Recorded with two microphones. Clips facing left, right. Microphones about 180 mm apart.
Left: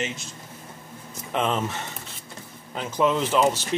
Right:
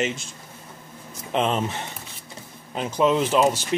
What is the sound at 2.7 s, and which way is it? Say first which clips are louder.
Speech: right 2 dB; 20° right (ahead or behind).